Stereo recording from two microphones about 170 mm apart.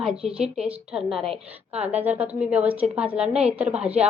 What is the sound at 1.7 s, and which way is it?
A woman's voice, 10° right (ahead or behind).